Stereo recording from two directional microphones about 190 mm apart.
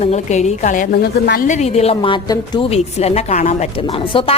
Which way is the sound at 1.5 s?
35° left (ahead or behind).